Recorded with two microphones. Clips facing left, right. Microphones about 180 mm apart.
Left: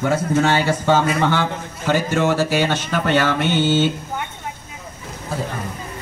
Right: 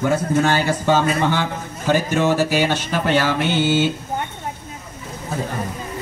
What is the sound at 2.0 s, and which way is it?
Speech, 15° right (ahead or behind).